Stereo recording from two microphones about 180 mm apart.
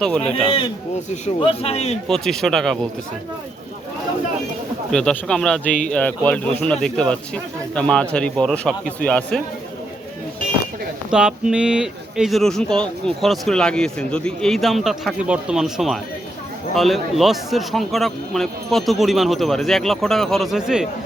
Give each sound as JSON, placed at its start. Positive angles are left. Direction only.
{"t": 0.9, "sound": "speech", "side_deg": 40}
{"t": 2.0, "sound": "speech", "side_deg": 5}
{"t": 4.9, "sound": "speech", "side_deg": 5}
{"t": 11.1, "sound": "speech", "side_deg": -5}